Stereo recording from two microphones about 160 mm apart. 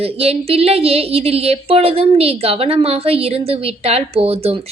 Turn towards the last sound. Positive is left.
turn(degrees=-35)  # may be behind; listen again after turning